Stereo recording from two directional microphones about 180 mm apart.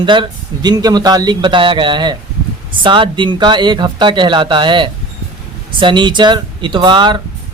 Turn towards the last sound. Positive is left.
turn(degrees=-25)  # may be behind; listen again after turning